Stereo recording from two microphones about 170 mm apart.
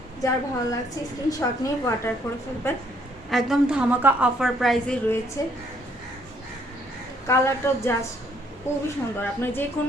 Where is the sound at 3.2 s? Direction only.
Centre (ahead or behind).